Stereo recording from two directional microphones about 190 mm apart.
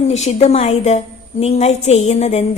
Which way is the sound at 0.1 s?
35° left (ahead or behind).